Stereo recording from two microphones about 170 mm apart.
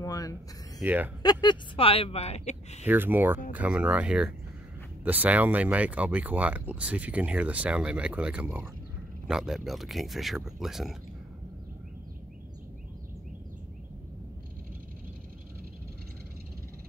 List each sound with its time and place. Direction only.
0.0 s a sound: 20° left (ahead or behind)
0.8 s speech: 10° right (ahead or behind)
1.2 s speech: 25° left (ahead or behind)
2.9 s speech: 10° right (ahead or behind)